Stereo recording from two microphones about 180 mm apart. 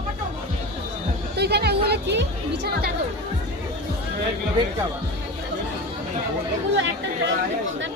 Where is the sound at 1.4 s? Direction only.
65° right (ahead or behind).